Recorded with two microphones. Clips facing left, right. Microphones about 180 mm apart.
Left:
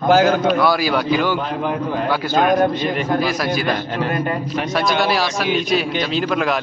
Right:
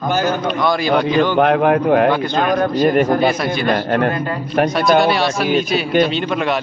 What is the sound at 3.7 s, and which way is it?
A man's voice, 60° right (ahead or behind).